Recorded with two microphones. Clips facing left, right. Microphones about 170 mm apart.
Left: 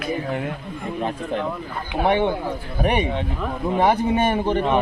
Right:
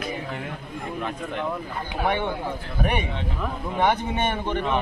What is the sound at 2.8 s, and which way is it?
A man's voice, 35° left (ahead or behind).